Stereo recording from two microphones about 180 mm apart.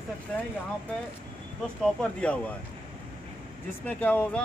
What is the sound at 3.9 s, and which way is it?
Speech, 10° left (ahead or behind).